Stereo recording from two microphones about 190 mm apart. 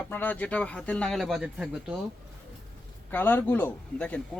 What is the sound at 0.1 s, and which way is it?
A man's voice, 10° left (ahead or behind).